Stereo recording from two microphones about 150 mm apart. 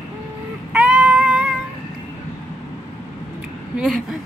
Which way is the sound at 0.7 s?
10° right (ahead or behind).